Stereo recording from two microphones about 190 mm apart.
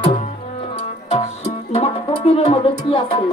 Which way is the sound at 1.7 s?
30° left (ahead or behind).